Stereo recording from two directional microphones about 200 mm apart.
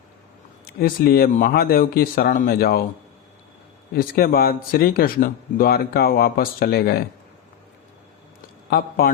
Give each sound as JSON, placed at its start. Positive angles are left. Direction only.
{"t": 0.8, "sound": "speech", "side_deg": 45}
{"t": 3.9, "sound": "speech", "side_deg": 45}
{"t": 8.7, "sound": "speech", "side_deg": 50}